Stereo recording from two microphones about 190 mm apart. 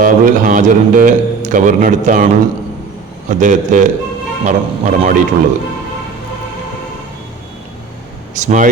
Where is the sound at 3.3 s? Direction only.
40° right (ahead or behind).